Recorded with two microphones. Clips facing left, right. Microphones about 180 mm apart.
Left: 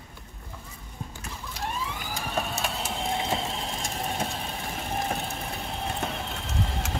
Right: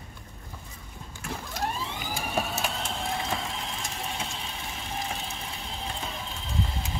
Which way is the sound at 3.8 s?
45° left (ahead or behind).